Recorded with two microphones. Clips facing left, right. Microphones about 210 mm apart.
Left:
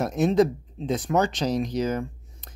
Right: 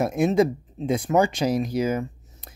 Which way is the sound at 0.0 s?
10° right (ahead or behind).